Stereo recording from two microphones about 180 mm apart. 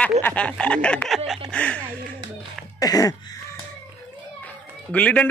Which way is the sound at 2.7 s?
20° left (ahead or behind).